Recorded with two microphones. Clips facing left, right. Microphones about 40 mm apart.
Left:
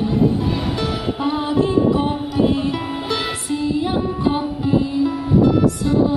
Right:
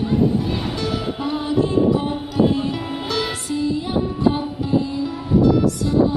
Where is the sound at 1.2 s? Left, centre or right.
Left.